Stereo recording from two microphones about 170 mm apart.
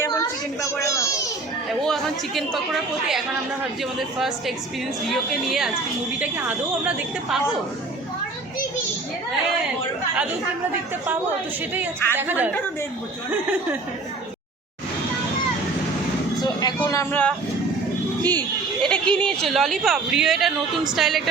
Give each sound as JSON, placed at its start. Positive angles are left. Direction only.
{"t": 0.8, "sound": "a child's voice", "side_deg": 20}
{"t": 1.8, "sound": "a woman's voice", "side_deg": 0}
{"t": 5.0, "sound": "a woman's voice", "side_deg": 0}
{"t": 11.7, "sound": "a woman's voice", "side_deg": -10}
{"t": 16.4, "sound": "vehicle", "side_deg": 25}
{"t": 18.2, "sound": "a woman's voice", "side_deg": 10}